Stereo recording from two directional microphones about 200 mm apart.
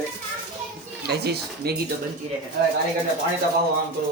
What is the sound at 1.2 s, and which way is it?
Speech, 55° right (ahead or behind).